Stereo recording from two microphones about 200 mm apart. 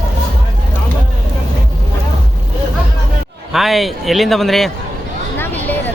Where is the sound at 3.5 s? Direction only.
Centre (ahead or behind).